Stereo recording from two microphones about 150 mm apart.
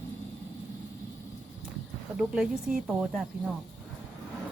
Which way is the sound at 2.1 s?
5° right (ahead or behind).